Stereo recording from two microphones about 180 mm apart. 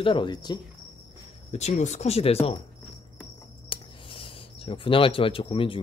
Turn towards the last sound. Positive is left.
turn(degrees=30)  # may be behind; listen again after turning